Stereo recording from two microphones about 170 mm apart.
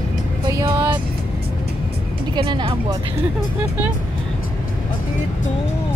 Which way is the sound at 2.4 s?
30° right (ahead or behind).